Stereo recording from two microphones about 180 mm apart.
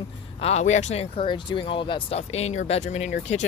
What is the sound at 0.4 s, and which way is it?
Speech, 40° left (ahead or behind).